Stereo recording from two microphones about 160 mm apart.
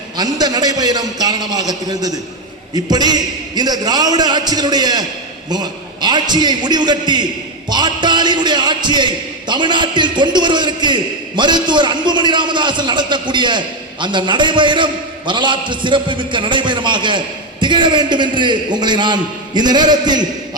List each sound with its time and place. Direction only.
0.2 s a man's voice: 25° right (ahead or behind)